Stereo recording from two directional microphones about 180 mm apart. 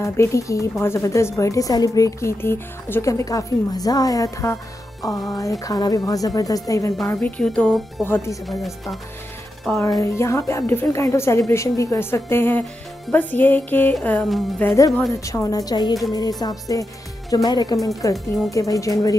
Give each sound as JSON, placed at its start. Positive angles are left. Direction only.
{"t": 0.0, "sound": "speech", "side_deg": 15}
{"t": 7.2, "sound": "speech", "side_deg": 5}
{"t": 8.5, "sound": "speech", "side_deg": 0}
{"t": 9.8, "sound": "speech", "side_deg": 20}
{"t": 15.1, "sound": "speech", "side_deg": 15}